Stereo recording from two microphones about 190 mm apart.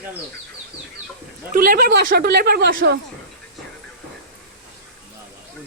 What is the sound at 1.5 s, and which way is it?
Speech, 50° right (ahead or behind).